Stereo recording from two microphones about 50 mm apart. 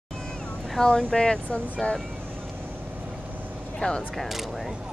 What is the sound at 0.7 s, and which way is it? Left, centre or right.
Speech, centre.